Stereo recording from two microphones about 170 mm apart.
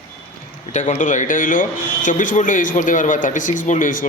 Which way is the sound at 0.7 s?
45° left (ahead or behind).